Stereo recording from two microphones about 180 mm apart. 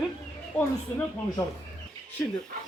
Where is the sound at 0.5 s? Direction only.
5° left (ahead or behind).